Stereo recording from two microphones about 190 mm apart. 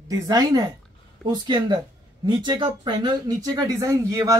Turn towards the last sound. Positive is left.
turn(degrees=-20)  # may be behind; listen again after turning